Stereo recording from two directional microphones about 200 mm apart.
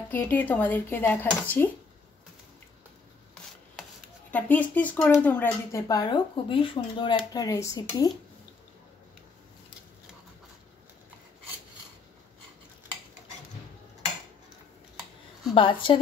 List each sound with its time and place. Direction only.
0.1 s speech: 10° left (ahead or behind)
4.3 s speech: 10° left (ahead or behind)
15.5 s speech: 25° left (ahead or behind)